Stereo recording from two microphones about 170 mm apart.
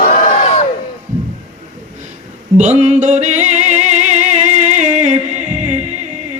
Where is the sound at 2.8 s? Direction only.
45° right (ahead or behind).